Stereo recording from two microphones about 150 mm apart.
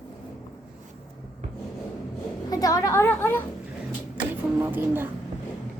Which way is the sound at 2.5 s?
25° left (ahead or behind).